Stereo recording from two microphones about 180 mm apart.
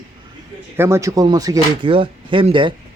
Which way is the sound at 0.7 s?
15° right (ahead or behind).